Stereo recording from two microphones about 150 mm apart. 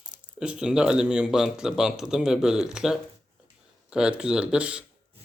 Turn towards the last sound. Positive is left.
turn(degrees=-5)  # may be behind; listen again after turning